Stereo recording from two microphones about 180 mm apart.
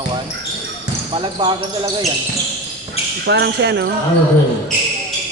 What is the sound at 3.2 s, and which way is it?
Speech, 70° right (ahead or behind).